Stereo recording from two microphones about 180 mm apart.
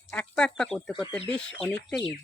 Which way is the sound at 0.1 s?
5° left (ahead or behind).